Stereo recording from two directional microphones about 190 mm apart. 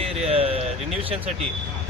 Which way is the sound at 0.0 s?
30° right (ahead or behind).